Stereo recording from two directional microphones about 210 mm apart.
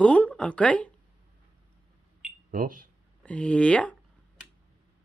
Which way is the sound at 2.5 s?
40° right (ahead or behind).